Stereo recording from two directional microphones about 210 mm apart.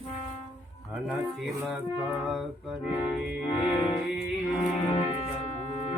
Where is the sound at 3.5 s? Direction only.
20° left (ahead or behind).